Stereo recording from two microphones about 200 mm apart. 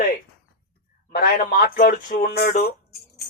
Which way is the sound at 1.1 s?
50° left (ahead or behind).